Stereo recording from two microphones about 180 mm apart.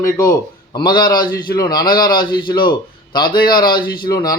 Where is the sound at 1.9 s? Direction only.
55° left (ahead or behind).